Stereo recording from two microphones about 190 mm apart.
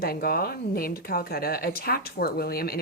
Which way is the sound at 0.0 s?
50° left (ahead or behind).